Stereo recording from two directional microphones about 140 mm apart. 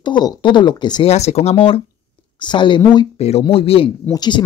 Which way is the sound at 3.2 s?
45° left (ahead or behind).